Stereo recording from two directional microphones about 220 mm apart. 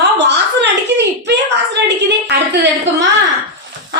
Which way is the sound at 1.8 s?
50° right (ahead or behind).